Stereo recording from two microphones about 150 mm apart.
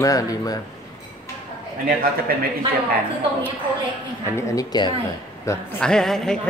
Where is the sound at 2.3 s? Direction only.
85° right.